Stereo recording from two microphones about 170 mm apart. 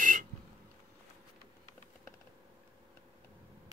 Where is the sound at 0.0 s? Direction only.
50° right (ahead or behind).